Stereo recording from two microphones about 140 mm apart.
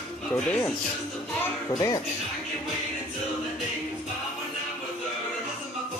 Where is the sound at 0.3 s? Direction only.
10° left (ahead or behind).